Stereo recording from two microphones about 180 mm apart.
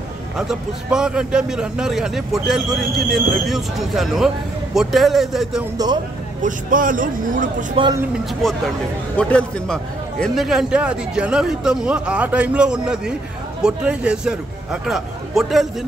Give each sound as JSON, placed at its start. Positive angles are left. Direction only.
{"t": 0.4, "sound": "a man's voice", "side_deg": -5}
{"t": 6.4, "sound": "a man's voice", "side_deg": -50}
{"t": 7.8, "sound": "speech", "side_deg": -30}
{"t": 8.1, "sound": "a man's voice", "side_deg": 0}